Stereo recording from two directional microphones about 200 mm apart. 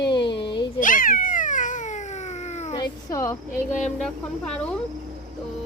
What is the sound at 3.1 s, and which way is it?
Speech, 15° left (ahead or behind).